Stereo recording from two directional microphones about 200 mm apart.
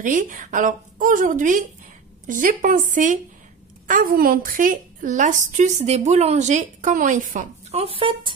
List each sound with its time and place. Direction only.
0.0 s a woman's voice: 40° right (ahead or behind)